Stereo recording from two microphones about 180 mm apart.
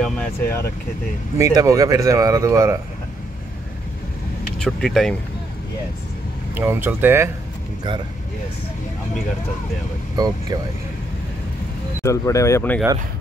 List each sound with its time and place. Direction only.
0.0 s speech: 10° left (ahead or behind)
1.4 s speech: 20° right (ahead or behind)
4.6 s speech: centre (ahead or behind)
6.5 s speech: 10° right (ahead or behind)
10.1 s speech: 20° right (ahead or behind)
12.0 s speech: 15° left (ahead or behind)